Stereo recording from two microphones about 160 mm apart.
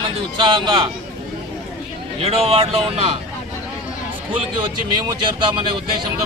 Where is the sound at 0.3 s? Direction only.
30° right (ahead or behind).